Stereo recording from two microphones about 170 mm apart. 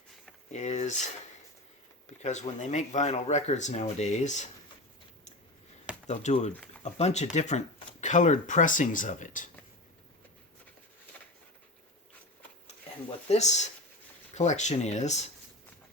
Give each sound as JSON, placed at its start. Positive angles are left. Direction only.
{"t": 0.5, "sound": "speech", "side_deg": 45}
{"t": 6.1, "sound": "speech", "side_deg": 40}
{"t": 13.1, "sound": "speech", "side_deg": 40}